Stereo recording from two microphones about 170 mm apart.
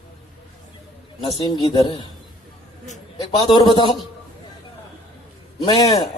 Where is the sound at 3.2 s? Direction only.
25° left (ahead or behind).